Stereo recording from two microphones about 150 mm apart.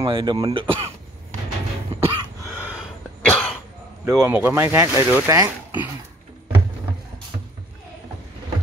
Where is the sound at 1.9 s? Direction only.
20° right (ahead or behind).